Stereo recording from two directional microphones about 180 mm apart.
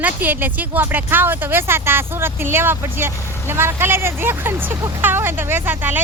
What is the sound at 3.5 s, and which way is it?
Speech, 15° right (ahead or behind).